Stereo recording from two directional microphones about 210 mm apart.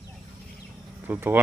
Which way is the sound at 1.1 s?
10° right (ahead or behind).